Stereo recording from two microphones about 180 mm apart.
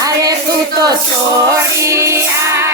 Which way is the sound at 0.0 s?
20° right (ahead or behind).